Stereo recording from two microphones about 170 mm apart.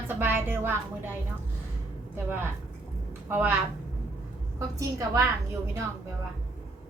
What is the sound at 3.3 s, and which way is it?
Speech, 10° right (ahead or behind).